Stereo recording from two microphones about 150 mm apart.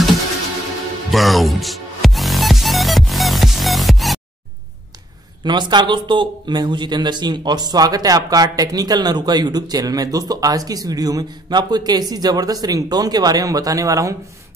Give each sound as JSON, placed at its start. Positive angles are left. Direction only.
{"t": 1.1, "sound": "music", "side_deg": 0}
{"t": 5.4, "sound": "speech", "side_deg": -30}